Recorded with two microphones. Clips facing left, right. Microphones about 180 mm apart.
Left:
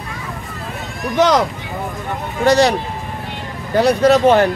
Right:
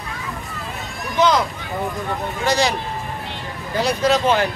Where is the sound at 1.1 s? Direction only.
75° left (ahead or behind).